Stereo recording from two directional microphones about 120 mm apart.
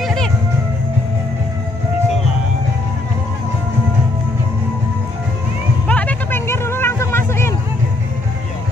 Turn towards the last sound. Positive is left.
turn(degrees=20)  # may be behind; listen again after turning